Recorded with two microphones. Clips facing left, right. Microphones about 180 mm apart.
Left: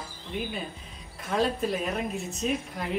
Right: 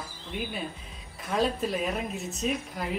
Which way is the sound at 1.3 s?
Centre (ahead or behind).